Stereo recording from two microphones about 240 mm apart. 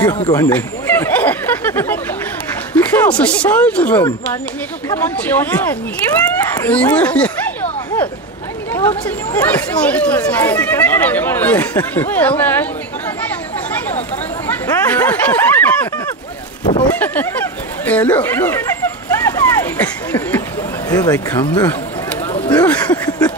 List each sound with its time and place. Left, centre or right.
0.3 s a sound: centre
2.7 s speech: centre
8.7 s speech: centre
14.5 s speech: centre
17.0 s speech: centre
19.4 s cat: centre
20.9 s speech: centre
22.7 s a sound: centre
23.0 s a sound: centre